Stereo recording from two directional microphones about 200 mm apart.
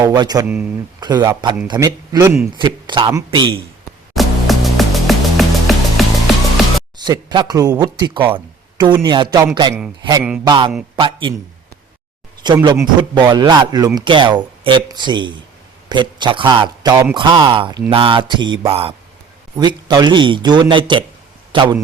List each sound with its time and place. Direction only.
0.0 s a man's voice: 20° right (ahead or behind)
0.4 s speech: 10° right (ahead or behind)
1.0 s a man's voice: 20° right (ahead or behind)
4.1 s music: centre (ahead or behind)
7.0 s a man's voice: 20° right (ahead or behind)
12.4 s a man's voice: 20° right (ahead or behind)